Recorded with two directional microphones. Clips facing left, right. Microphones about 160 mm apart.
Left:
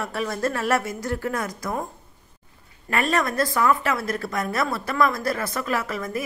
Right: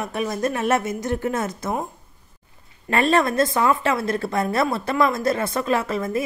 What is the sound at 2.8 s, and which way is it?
Speech, 25° right (ahead or behind).